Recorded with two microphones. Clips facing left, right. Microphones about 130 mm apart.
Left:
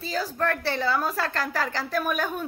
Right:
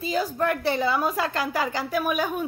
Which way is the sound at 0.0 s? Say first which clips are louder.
Right 3 dB; 15° right (ahead or behind).